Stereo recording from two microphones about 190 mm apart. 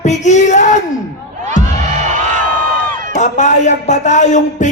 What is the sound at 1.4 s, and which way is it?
Music, 40° right (ahead or behind).